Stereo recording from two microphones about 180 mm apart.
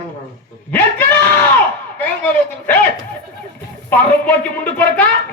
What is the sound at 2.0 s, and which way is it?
Speech, 10° left (ahead or behind).